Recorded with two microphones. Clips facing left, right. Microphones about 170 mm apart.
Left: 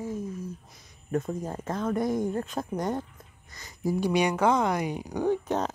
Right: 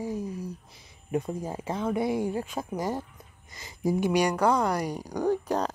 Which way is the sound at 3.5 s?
20° right (ahead or behind).